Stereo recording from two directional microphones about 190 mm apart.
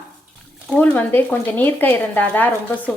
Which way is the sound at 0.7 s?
10° left (ahead or behind).